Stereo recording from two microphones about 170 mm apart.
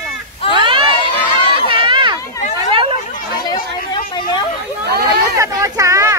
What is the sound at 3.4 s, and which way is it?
Chatter, 25° left (ahead or behind).